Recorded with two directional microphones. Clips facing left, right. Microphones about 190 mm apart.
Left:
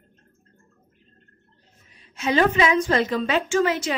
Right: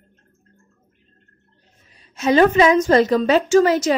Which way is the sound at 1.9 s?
40° right (ahead or behind).